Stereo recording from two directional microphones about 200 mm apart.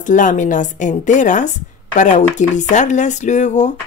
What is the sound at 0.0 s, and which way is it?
Speech, 40° left (ahead or behind).